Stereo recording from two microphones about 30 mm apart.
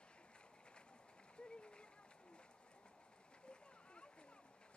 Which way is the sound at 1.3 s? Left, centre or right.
Left.